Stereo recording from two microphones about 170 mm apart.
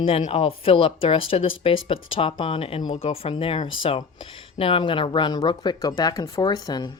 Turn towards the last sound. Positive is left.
turn(degrees=25)  # may be behind; listen again after turning